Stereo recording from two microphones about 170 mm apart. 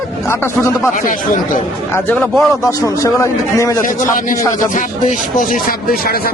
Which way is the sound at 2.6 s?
20° left (ahead or behind).